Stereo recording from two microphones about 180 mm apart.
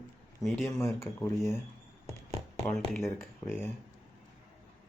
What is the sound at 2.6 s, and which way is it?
Speech, 10° left (ahead or behind).